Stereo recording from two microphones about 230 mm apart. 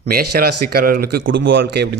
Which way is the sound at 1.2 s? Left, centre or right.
Right.